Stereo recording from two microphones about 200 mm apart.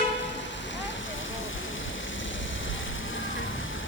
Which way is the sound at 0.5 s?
65° left (ahead or behind).